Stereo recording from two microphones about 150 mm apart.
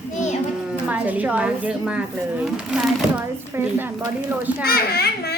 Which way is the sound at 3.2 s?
15° right (ahead or behind).